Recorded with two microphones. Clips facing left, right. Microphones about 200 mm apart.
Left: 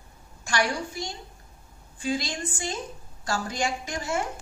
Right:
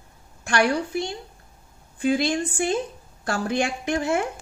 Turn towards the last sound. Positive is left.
turn(degrees=-60)  # may be behind; listen again after turning